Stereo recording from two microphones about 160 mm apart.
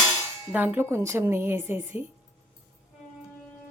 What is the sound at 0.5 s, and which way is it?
Speech, 10° right (ahead or behind).